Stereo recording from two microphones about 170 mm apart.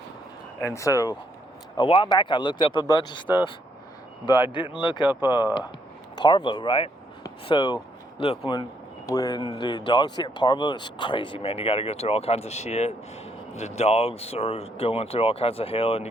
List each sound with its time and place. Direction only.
0.6 s speech: 20° left (ahead or behind)
4.3 s speech: 25° left (ahead or behind)
6.1 s speech: 25° left (ahead or behind)
9.0 s speech: 20° left (ahead or behind)